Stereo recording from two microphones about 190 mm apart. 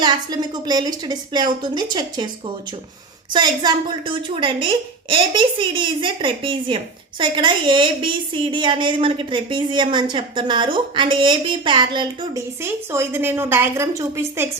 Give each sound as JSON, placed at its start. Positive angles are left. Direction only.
{"t": 0.0, "sound": "a woman's voice", "side_deg": -20}
{"t": 3.3, "sound": "a woman's voice", "side_deg": -20}